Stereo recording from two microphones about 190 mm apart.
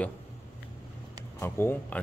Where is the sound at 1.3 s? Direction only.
10° left (ahead or behind).